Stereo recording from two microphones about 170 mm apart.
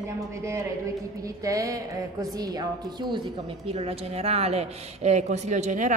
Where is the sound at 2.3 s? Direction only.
25° right (ahead or behind); by 6.0 s 45° right (ahead or behind).